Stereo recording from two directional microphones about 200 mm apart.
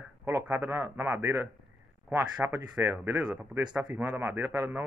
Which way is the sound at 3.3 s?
20° right (ahead or behind).